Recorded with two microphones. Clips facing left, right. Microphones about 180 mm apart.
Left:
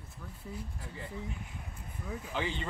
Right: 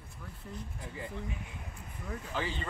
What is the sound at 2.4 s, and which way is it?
Speech, 20° left (ahead or behind).